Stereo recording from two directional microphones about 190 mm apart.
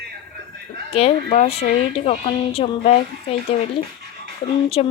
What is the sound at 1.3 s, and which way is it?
Speech, 35° left (ahead or behind).